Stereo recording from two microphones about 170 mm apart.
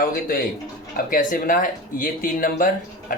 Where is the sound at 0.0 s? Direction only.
55° left (ahead or behind).